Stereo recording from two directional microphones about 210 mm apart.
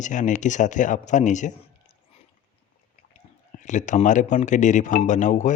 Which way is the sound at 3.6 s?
35° left (ahead or behind).